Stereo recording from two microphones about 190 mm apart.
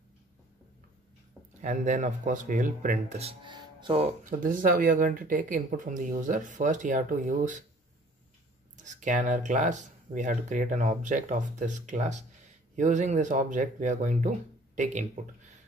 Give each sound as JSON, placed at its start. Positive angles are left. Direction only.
{"t": 1.6, "sound": "speech", "side_deg": -40}
{"t": 4.2, "sound": "speech", "side_deg": -45}
{"t": 8.7, "sound": "speech", "side_deg": -40}